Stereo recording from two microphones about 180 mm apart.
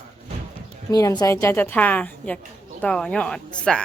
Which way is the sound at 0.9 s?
20° left (ahead or behind).